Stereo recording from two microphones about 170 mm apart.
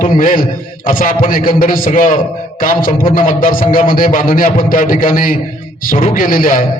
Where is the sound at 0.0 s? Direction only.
50° left (ahead or behind).